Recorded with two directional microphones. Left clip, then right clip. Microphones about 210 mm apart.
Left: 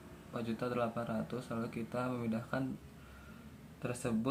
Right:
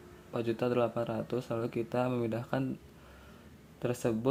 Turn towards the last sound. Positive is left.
turn(degrees=-40)  # may be behind; listen again after turning